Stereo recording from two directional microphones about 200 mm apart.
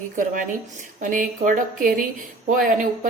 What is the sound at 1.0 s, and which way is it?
A woman's voice, 40° right (ahead or behind).